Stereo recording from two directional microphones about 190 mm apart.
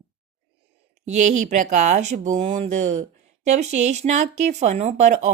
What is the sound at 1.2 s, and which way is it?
Speech, 40° right (ahead or behind).